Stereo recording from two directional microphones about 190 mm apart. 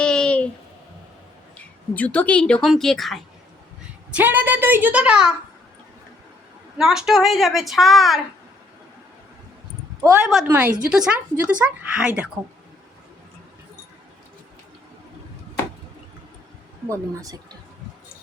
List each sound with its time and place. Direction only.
0.0 s a sound: 5° left (ahead or behind)
1.9 s a woman's voice: 10° left (ahead or behind)
6.7 s a woman's voice: centre (ahead or behind)
10.0 s a woman's voice: 10° right (ahead or behind)
16.9 s a woman's voice: 20° right (ahead or behind)